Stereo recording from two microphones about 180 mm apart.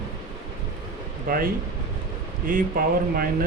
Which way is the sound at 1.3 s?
55° right (ahead or behind).